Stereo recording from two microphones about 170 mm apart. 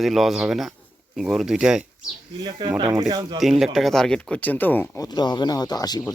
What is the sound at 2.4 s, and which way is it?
Speech, 25° right (ahead or behind).